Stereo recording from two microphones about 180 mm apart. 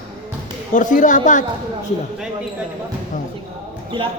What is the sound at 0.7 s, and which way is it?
Speech, 45° left (ahead or behind).